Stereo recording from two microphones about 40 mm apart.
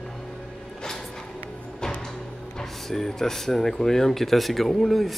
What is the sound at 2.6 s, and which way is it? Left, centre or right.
Speech, centre.